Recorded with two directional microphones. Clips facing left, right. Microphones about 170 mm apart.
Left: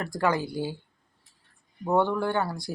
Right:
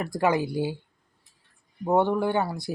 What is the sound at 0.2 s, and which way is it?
Speech, 20° right (ahead or behind).